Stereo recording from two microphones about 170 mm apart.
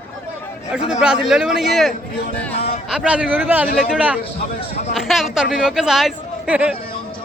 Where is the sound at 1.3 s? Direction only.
Centre (ahead or behind).